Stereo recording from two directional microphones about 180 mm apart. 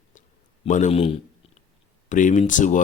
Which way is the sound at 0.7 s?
40° left (ahead or behind).